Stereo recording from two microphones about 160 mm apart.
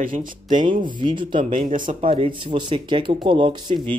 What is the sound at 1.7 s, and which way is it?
Speech, 55° right (ahead or behind).